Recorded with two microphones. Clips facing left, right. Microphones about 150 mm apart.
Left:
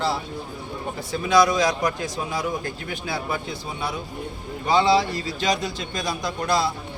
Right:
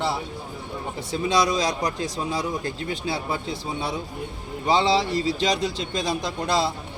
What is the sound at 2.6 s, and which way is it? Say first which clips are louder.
Speech: right 2 dB; 30° right (ahead or behind).